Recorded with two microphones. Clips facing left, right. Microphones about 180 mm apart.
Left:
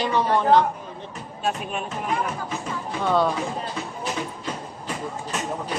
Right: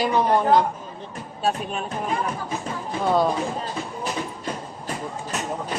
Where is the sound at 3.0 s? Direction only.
10° right (ahead or behind).